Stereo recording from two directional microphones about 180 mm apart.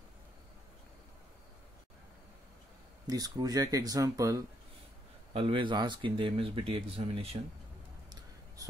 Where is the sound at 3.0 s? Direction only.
20° right (ahead or behind).